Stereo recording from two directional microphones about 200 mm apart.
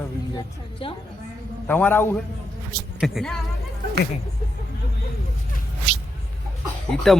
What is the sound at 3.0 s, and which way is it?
Speech, centre (ahead or behind).